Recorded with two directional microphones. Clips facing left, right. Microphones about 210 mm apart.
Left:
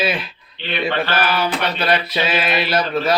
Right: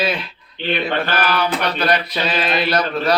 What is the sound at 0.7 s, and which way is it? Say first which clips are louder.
Mantra: even; 50° right (ahead or behind).